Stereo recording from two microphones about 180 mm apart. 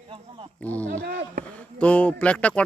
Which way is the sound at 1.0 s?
55° right (ahead or behind).